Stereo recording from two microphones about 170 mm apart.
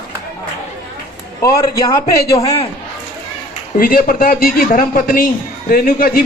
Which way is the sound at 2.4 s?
35° left (ahead or behind).